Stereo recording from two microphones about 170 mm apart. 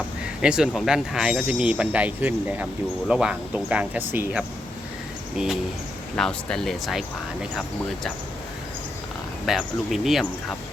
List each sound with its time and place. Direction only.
0.4 s speech: 5° right (ahead or behind)
6.1 s speech: 5° left (ahead or behind)
9.5 s speech: centre (ahead or behind)